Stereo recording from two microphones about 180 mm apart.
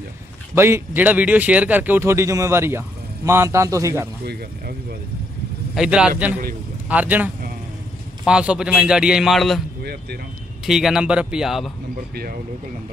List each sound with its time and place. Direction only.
0.6 s speech: 15° right (ahead or behind)
4.2 s speech: 60° right (ahead or behind)
5.8 s speech: 5° right (ahead or behind)
8.3 s speech: 5° right (ahead or behind)
10.6 s speech: centre (ahead or behind)